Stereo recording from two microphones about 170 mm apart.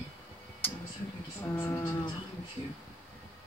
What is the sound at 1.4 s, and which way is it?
Speech, 15° left (ahead or behind).